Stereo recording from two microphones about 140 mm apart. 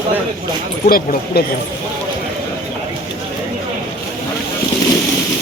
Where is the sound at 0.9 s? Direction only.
90° left.